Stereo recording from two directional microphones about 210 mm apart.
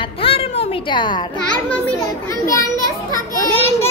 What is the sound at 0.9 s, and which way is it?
Speech, 20° left (ahead or behind).